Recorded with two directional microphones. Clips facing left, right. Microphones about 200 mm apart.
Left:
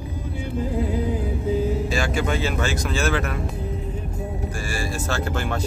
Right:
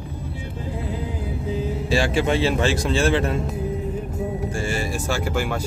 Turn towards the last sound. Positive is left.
turn(degrees=-10)  # may be behind; listen again after turning